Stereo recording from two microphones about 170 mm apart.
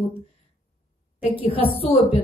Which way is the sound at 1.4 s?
35° left (ahead or behind).